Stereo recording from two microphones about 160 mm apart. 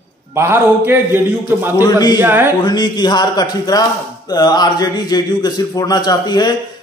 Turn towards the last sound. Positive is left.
turn(degrees=25)  # may be behind; listen again after turning